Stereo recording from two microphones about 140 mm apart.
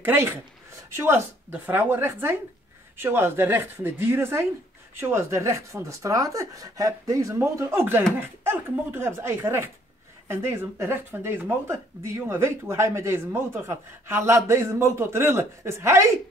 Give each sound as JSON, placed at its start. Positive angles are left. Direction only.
{"t": 0.0, "sound": "speech", "side_deg": -15}